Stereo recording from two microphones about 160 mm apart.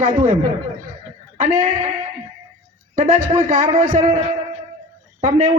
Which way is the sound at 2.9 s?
55° right (ahead or behind).